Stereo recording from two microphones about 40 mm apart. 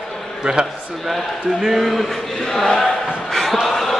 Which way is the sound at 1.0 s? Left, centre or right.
Centre.